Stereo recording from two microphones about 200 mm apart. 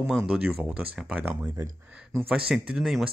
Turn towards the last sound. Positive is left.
turn(degrees=0)  # may be behind; listen again after turning